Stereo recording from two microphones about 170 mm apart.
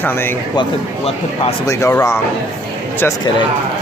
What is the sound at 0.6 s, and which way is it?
Speech, 35° left (ahead or behind).